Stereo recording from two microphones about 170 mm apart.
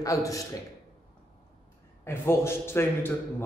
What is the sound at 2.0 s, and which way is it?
A man's voice, 15° left (ahead or behind).